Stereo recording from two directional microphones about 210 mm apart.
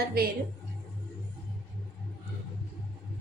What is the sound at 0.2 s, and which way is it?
Speech, 45° right (ahead or behind).